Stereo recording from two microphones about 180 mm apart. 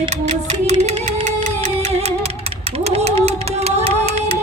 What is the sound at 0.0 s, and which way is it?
Music, 35° right (ahead or behind).